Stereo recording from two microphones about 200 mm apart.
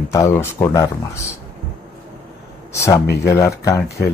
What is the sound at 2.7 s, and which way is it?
Speech, 15° left (ahead or behind).